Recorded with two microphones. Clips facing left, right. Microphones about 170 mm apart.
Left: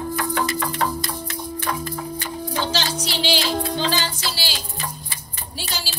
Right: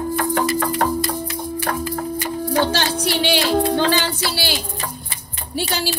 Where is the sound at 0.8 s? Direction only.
50° right (ahead or behind).